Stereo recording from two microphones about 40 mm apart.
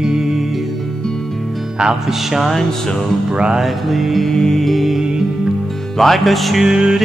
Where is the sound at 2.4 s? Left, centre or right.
Centre.